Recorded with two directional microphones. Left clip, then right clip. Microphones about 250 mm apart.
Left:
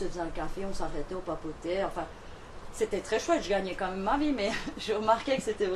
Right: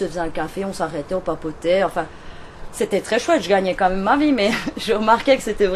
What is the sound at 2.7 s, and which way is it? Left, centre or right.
A woman's voice, right.